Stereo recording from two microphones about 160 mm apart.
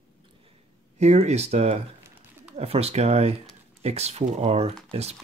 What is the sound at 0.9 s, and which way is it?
Speech, 45° right (ahead or behind).